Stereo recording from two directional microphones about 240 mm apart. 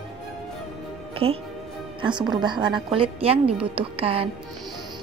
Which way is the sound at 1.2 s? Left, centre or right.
Right.